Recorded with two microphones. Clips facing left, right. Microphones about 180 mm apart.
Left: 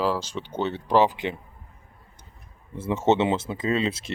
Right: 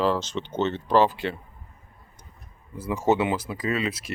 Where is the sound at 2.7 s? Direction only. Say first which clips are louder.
Left 1 dB; 25° left (ahead or behind).